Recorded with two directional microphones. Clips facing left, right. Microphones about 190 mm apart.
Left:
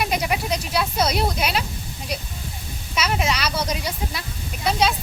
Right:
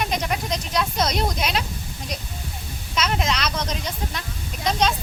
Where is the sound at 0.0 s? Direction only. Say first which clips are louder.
Left 2 dB; 10° left (ahead or behind).